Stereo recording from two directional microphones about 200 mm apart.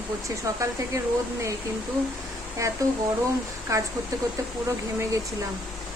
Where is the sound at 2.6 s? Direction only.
15° right (ahead or behind).